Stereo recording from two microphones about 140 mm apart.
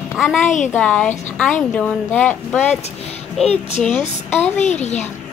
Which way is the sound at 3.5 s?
50° left (ahead or behind).